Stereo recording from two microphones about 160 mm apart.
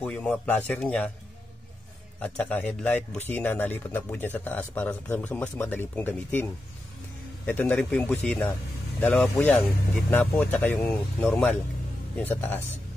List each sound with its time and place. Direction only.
0.0 s speech: 5° left (ahead or behind)
2.2 s speech: 5° left (ahead or behind)